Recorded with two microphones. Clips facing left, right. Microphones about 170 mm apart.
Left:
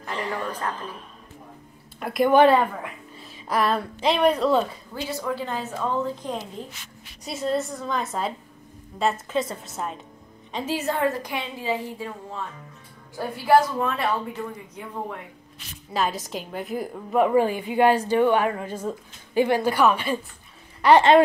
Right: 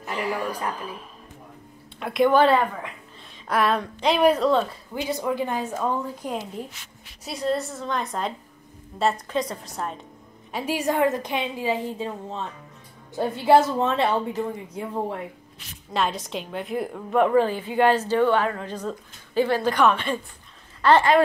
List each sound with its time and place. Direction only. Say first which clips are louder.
0.0 s a woman's voice: right 2 dB; 10° right (ahead or behind)
2.0 s speech: right 1 dB; 5° left (ahead or behind)
2.3 s a woman's voice: left 3 dB; 20° left (ahead or behind)
3.4 s a woman's voice: right 1 dB; centre (ahead or behind)
4.9 s a woman's voice: right 3 dB; 15° right (ahead or behind)
7.2 s a woman's voice: even; centre (ahead or behind)
10.5 s a woman's voice: right 2 dB; 10° right (ahead or behind); by 15.1 s 30° right (ahead or behind)
15.9 s a woman's voice: even; centre (ahead or behind)
17.3 s speech: even; 15° left (ahead or behind)